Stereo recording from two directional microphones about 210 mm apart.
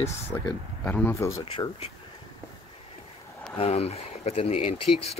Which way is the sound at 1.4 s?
25° left (ahead or behind).